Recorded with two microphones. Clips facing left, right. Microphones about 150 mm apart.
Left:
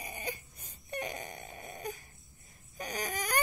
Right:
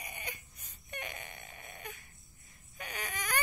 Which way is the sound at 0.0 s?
30° left (ahead or behind).